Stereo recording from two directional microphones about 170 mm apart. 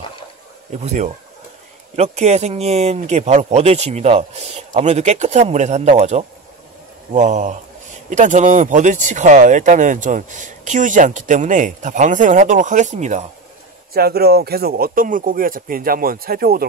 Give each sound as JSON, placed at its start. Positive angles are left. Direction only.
{"t": 0.8, "sound": "speech", "side_deg": -45}
{"t": 13.9, "sound": "speech", "side_deg": -65}